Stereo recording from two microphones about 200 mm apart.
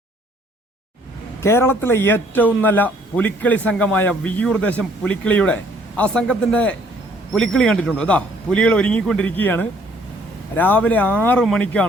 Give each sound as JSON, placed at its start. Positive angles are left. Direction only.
{"t": 1.4, "sound": "a man's voice", "side_deg": 15}